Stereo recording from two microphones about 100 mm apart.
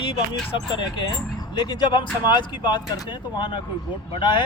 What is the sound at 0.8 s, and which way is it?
Speech, 50° left (ahead or behind).